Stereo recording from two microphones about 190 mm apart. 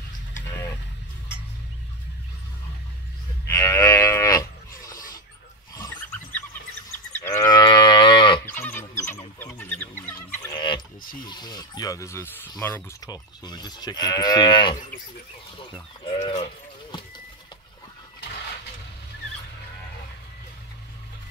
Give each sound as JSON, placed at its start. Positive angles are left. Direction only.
{"t": 3.4, "sound": "moo", "side_deg": 15}
{"t": 4.9, "sound": "rodents", "side_deg": 45}
{"t": 7.2, "sound": "moo", "side_deg": 15}
{"t": 8.5, "sound": "a sound", "side_deg": 10}
{"t": 10.5, "sound": "a sound", "side_deg": 25}
{"t": 11.2, "sound": "speech", "side_deg": 20}
{"t": 16.2, "sound": "speech", "side_deg": 40}